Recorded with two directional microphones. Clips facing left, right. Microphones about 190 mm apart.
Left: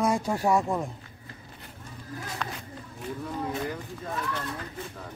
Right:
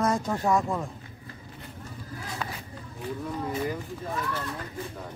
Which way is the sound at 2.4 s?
5° right (ahead or behind).